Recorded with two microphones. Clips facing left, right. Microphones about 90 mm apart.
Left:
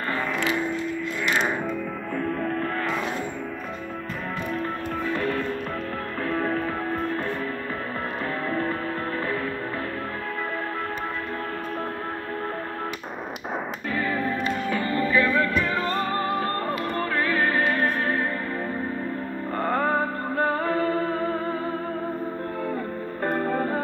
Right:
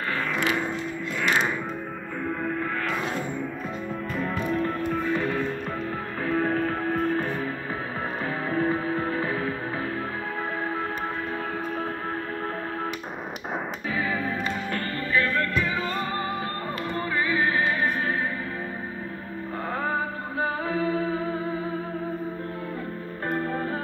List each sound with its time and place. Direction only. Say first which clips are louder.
2.2 s music: left 1 dB; 65° left (ahead or behind)
5.1 s music: even; 10° right (ahead or behind)
13.9 s music: left 2 dB; 5° right (ahead or behind)
15.1 s music: left 2 dB; 15° left (ahead or behind)
15.5 s music: left 2 dB; 55° left (ahead or behind)
15.9 s music: left 3 dB; 40° left (ahead or behind)
16.9 s music: right 1 dB; 55° left (ahead or behind)
17.6 s music: left 2 dB; 10° right (ahead or behind)
19.6 s music: left 5 dB; 55° left (ahead or behind)
23.2 s music: left 3 dB; 50° left (ahead or behind)